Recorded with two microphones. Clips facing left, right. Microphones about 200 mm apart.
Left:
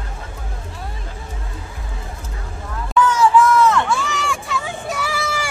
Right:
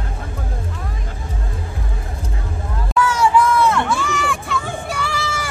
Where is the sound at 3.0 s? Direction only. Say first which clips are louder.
Left 1 dB; 10° right (ahead or behind).